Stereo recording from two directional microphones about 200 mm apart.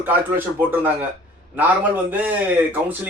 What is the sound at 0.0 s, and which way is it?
Speech, 10° right (ahead or behind).